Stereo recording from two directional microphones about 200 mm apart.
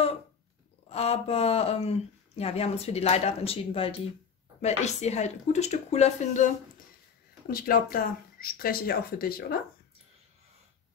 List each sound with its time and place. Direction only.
0.8 s speech: 30° left (ahead or behind)
7.4 s speech: 45° left (ahead or behind)